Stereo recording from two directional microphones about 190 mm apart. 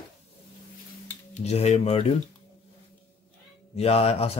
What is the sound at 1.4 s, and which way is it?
Speech, 35° left (ahead or behind).